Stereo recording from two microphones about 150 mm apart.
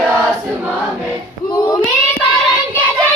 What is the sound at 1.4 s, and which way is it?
Child singing, 25° left (ahead or behind).